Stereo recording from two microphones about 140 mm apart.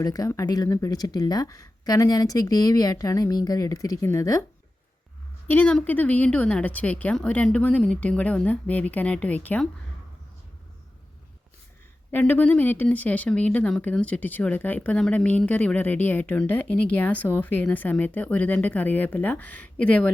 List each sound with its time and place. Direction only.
0.0 s speech: 25° left (ahead or behind)
5.5 s speech: 10° left (ahead or behind)
12.1 s speech: 10° left (ahead or behind)